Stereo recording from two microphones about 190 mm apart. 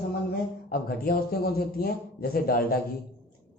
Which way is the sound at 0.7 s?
50° left (ahead or behind).